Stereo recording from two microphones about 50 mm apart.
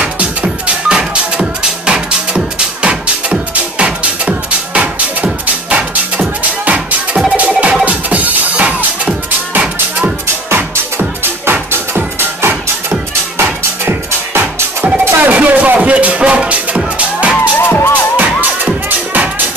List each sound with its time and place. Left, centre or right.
0.0 s music: right
9.5 s music: right
15.0 s music: right
17.6 s music: left
18.1 s music: right